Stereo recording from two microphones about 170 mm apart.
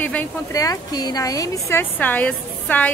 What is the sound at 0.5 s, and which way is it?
A woman's voice, 20° left (ahead or behind).